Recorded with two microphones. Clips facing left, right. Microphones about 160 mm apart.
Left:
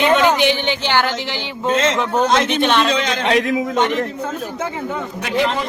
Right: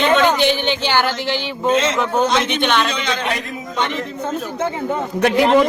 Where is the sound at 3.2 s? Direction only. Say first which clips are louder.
Left 7 dB; 90° left.